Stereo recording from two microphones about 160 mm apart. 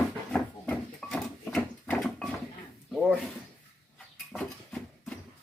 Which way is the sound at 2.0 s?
5° left (ahead or behind).